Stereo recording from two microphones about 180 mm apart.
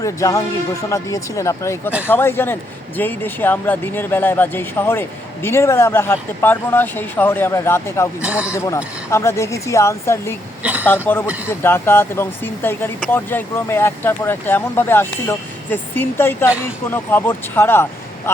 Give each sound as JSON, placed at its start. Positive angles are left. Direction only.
{"t": 0.0, "sound": "speech", "side_deg": 15}
{"t": 8.2, "sound": "speech", "side_deg": -5}
{"t": 8.5, "sound": "speech", "side_deg": 15}
{"t": 10.6, "sound": "a sound", "side_deg": -10}
{"t": 10.8, "sound": "speech", "side_deg": 10}